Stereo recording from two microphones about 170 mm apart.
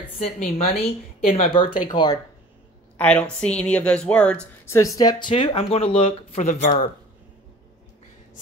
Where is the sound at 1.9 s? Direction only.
25° left (ahead or behind).